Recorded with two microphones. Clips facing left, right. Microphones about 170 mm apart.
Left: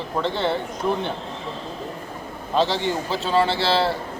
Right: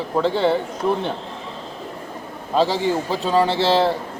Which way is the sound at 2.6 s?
10° right (ahead or behind).